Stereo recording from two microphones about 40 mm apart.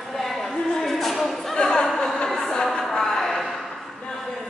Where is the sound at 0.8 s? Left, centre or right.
Centre.